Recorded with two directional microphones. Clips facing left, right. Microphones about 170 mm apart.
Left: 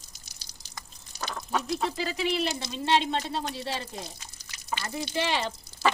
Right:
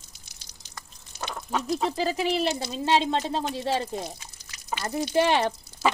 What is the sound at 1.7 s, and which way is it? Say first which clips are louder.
Speech: right 4 dB; 40° right (ahead or behind).